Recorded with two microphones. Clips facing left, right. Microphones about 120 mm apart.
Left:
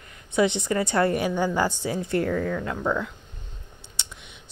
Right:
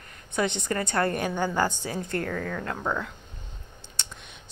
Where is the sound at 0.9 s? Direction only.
15° left (ahead or behind).